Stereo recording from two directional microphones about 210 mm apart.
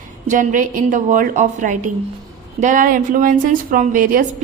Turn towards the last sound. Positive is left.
turn(degrees=-40)  # may be behind; listen again after turning